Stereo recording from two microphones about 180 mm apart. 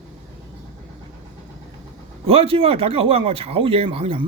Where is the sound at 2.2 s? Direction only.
30° right (ahead or behind).